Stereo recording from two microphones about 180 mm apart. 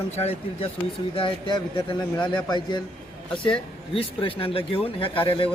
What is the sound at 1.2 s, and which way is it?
Speech, 25° left (ahead or behind).